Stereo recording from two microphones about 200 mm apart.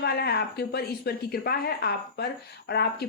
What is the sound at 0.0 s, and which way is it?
Speech, 50° left (ahead or behind).